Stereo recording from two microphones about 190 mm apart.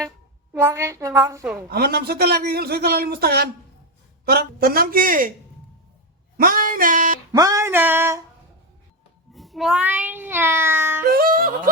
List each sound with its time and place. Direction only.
0.5 s a woman's voice: 15° right (ahead or behind)
1.7 s a man's voice: 55° right (ahead or behind)
6.3 s speech: 50° right (ahead or behind)
7.3 s a sound: 15° right (ahead or behind)
9.3 s meow: centre (ahead or behind)
11.0 s yodeling: 50° right (ahead or behind)